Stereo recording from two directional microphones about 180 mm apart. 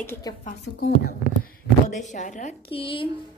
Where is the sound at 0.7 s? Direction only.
60° left (ahead or behind); by 2.5 s 45° left (ahead or behind).